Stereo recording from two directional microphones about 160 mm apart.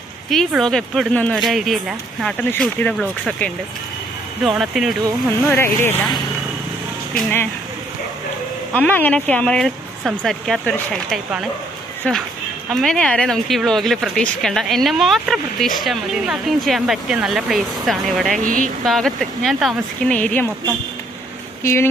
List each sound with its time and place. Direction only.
0.3 s speech: centre (ahead or behind)
5.5 s speech: 15° left (ahead or behind)
7.2 s speech: 10° left (ahead or behind)
8.7 s speech: 10° left (ahead or behind)
18.4 s speech: 55° right (ahead or behind)
18.9 s speech: centre (ahead or behind)